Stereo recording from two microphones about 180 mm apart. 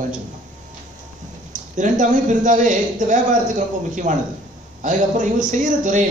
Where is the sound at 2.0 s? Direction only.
45° right (ahead or behind).